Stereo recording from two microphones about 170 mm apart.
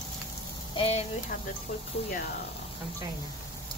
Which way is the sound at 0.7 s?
35° left (ahead or behind).